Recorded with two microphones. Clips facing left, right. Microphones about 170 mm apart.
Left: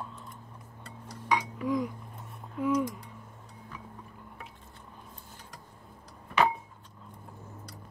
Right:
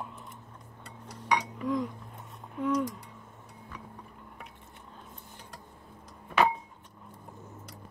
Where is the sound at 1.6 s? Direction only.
5° left (ahead or behind).